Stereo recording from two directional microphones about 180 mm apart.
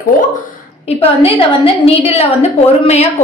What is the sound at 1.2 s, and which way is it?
A woman's voice, 30° left (ahead or behind).